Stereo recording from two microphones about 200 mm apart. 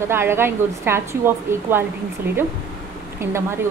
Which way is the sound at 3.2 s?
10° right (ahead or behind).